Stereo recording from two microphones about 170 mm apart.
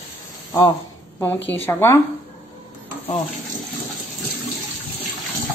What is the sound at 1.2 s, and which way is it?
Speech, 10° left (ahead or behind).